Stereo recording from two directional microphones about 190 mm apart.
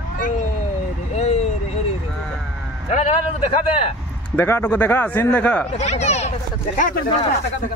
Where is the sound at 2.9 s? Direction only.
35° left (ahead or behind).